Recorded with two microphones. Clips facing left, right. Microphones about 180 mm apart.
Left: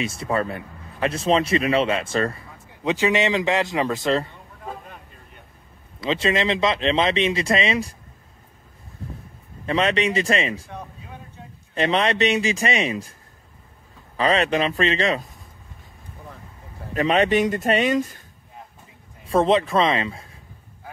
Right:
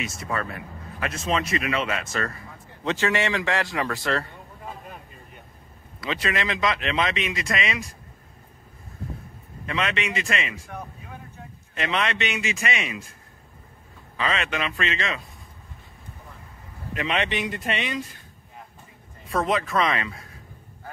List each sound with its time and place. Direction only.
0.0 s speech: 30° left (ahead or behind)
2.8 s speech: 15° left (ahead or behind)
4.8 s vehicle: 5° right (ahead or behind)
5.9 s speech: 25° left (ahead or behind)
9.7 s speech: 30° left (ahead or behind)
11.7 s speech: 35° left (ahead or behind)
14.1 s speech: 35° left (ahead or behind)
16.9 s speech: 40° left (ahead or behind)
19.2 s speech: 30° left (ahead or behind)